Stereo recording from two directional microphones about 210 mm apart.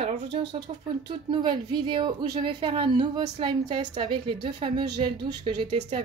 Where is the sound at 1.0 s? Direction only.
20° right (ahead or behind).